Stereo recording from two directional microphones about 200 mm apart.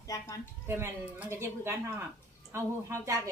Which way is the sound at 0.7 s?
10° right (ahead or behind).